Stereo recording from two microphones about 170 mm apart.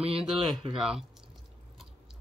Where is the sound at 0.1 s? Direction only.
Centre (ahead or behind).